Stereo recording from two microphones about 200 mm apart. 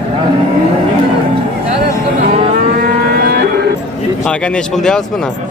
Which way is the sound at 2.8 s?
50° right (ahead or behind).